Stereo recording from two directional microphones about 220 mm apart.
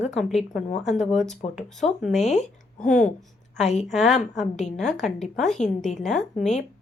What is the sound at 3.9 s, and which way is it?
A woman's voice, centre (ahead or behind).